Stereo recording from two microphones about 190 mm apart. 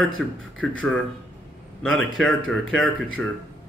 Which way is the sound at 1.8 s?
Centre (ahead or behind).